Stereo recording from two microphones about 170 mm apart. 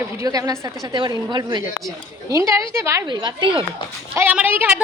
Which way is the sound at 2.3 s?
15° right (ahead or behind).